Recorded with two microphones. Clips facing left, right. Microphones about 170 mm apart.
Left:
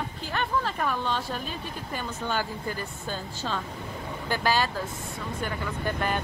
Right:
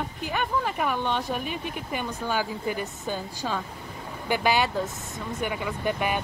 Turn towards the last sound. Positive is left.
turn(degrees=-10)  # may be behind; listen again after turning